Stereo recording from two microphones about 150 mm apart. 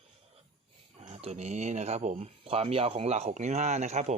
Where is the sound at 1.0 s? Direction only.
45° right (ahead or behind).